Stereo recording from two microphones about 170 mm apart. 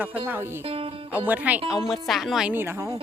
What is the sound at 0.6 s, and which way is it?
Music, 35° right (ahead or behind).